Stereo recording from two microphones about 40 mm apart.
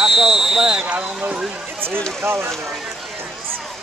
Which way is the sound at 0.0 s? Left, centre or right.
Centre.